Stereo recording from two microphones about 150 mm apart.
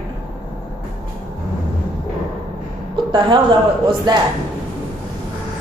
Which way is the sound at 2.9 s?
30° right (ahead or behind).